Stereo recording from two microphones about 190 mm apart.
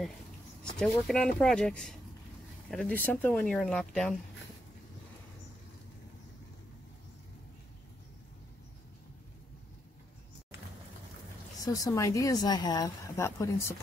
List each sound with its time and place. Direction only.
0.7 s speech: centre (ahead or behind)
11.6 s speech: 20° left (ahead or behind)